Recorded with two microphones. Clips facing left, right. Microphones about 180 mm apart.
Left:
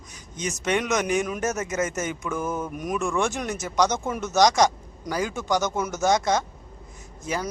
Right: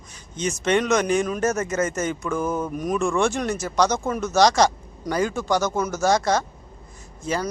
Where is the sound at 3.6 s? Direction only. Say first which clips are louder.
Right 1 dB; 20° left (ahead or behind).